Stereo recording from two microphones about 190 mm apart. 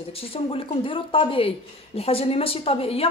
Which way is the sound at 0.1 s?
30° left (ahead or behind).